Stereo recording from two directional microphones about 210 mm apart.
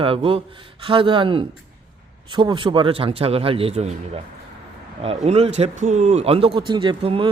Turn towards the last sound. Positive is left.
turn(degrees=-25)  # may be behind; listen again after turning